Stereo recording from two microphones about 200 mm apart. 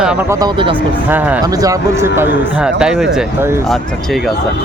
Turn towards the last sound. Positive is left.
turn(degrees=0)  # may be behind; listen again after turning